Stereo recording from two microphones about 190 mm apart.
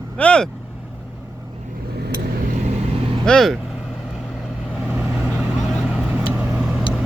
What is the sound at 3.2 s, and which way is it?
Speech, centre (ahead or behind).